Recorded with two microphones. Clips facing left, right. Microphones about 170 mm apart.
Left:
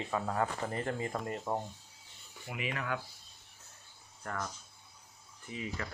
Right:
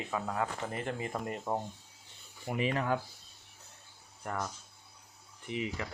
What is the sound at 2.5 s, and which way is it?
Speech, 35° right (ahead or behind).